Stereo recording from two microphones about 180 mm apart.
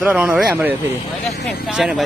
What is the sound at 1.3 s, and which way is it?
Speech, 60° left (ahead or behind).